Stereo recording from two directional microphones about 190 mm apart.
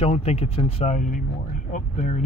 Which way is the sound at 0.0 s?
35° left (ahead or behind).